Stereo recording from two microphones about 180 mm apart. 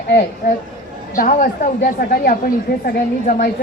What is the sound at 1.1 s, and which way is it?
A woman's voice, 50° left (ahead or behind).